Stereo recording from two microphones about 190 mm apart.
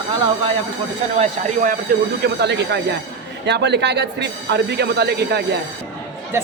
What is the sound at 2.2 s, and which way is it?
Speech, 60° right (ahead or behind).